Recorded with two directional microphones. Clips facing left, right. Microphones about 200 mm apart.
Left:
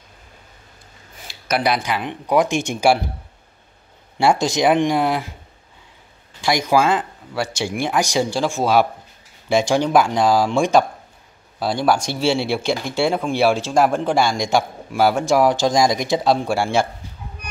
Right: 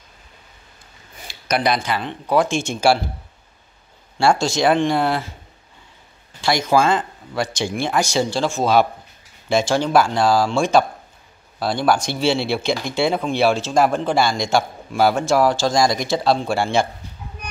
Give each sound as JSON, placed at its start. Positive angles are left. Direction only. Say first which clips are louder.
{"t": 1.1, "sound": "speech", "louder": "even", "side_deg": 5}
{"t": 4.2, "sound": "speech", "louder": "even", "side_deg": 15}
{"t": 6.4, "sound": "speech", "louder": "even", "side_deg": 15}